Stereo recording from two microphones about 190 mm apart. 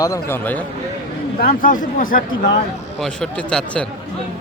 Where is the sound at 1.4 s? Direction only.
45° left (ahead or behind).